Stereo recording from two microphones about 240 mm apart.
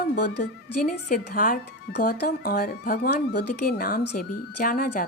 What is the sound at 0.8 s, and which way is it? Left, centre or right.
Speech, left.